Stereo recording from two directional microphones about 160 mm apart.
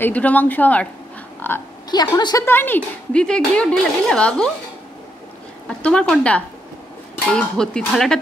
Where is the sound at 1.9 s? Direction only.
25° left (ahead or behind).